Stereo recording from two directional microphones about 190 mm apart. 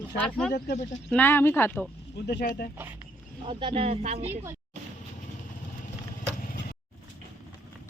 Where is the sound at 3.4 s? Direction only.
25° right (ahead or behind).